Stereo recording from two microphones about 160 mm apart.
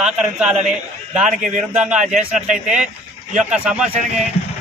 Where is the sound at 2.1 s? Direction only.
50° right (ahead or behind).